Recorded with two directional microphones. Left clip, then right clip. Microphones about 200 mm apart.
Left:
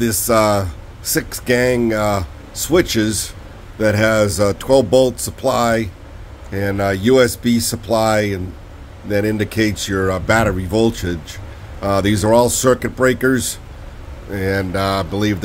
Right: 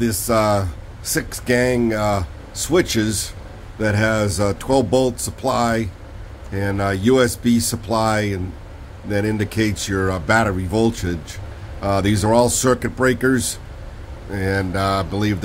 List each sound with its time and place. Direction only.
0.0 s speech: 20° left (ahead or behind)